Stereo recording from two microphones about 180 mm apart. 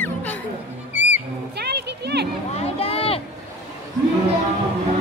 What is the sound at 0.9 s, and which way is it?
Music, 40° left (ahead or behind).